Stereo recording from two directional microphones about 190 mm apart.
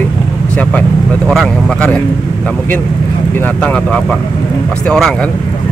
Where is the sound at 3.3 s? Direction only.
10° left (ahead or behind).